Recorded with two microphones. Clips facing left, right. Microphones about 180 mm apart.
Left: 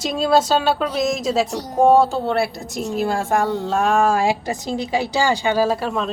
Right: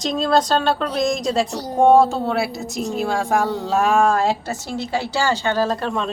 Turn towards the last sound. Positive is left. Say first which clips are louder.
# left 2 dB
turn(degrees=5)  # may be behind; listen again after turning